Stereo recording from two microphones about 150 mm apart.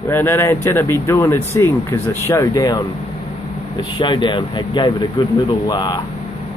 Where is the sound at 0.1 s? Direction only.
15° left (ahead or behind).